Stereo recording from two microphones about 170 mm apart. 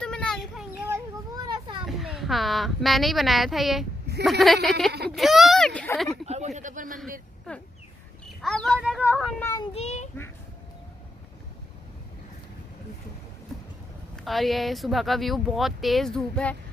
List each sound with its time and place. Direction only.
0.0 s children playing: 5° left (ahead or behind)
0.8 s children playing: 20° right (ahead or behind)
1.9 s speech: centre (ahead or behind)
6.2 s a man's voice: 40° right (ahead or behind)
7.5 s speech: 5° left (ahead or behind)
9.4 s child singing: 20° left (ahead or behind)
9.8 s a child's voice: 40° left (ahead or behind)
14.1 s speech: centre (ahead or behind)